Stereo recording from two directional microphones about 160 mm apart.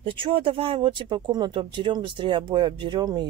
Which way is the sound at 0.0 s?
30° right (ahead or behind).